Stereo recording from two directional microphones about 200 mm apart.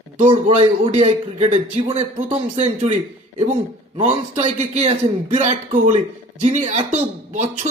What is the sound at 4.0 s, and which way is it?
Speech, 30° right (ahead or behind).